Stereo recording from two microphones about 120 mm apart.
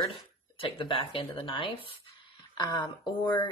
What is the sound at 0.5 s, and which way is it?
Speech, 45° left (ahead or behind).